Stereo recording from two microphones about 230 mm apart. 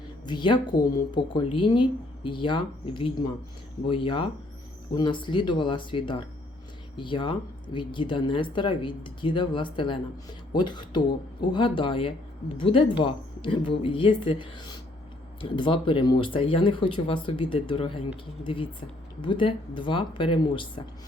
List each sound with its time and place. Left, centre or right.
0.3 s speech: centre